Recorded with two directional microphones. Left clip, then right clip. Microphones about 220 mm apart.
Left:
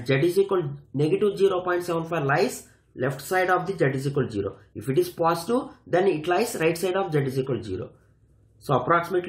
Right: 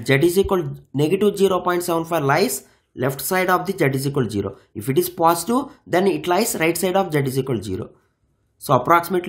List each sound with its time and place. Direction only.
0.0 s speech: 45° right (ahead or behind)